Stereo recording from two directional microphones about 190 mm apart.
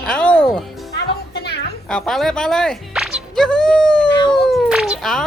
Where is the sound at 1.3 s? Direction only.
60° left (ahead or behind).